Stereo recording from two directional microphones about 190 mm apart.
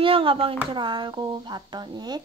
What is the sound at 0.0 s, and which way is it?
Speech, 30° right (ahead or behind).